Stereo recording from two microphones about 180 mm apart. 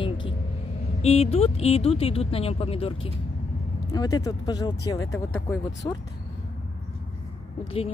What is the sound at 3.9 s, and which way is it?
Speech, 20° left (ahead or behind).